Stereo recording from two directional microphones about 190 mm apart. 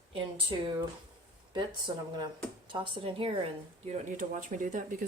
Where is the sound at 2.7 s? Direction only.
25° right (ahead or behind).